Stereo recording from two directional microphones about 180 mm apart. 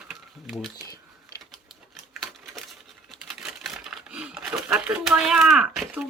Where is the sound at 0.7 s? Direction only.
20° left (ahead or behind).